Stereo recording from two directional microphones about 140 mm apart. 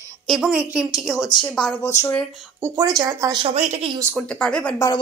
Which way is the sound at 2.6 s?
25° right (ahead or behind).